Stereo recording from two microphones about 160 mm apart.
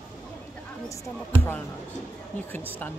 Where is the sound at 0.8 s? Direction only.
20° left (ahead or behind).